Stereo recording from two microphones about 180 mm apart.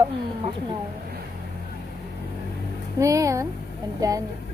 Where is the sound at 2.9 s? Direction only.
15° right (ahead or behind).